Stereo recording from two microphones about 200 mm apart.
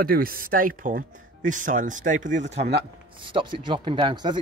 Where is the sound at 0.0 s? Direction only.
45° right (ahead or behind).